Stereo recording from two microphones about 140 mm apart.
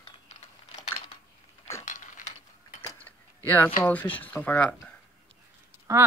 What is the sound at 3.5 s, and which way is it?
Speech, 15° left (ahead or behind).